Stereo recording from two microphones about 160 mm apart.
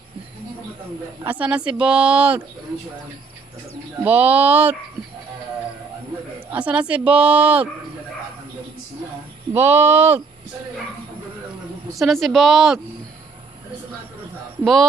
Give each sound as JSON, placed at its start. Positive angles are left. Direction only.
{"t": 1.2, "sound": "speech", "side_deg": -10}
{"t": 4.0, "sound": "speech", "side_deg": -10}
{"t": 6.5, "sound": "speech", "side_deg": -10}
{"t": 9.5, "sound": "speech", "side_deg": -15}
{"t": 11.9, "sound": "speech", "side_deg": 0}
{"t": 14.6, "sound": "speech", "side_deg": 0}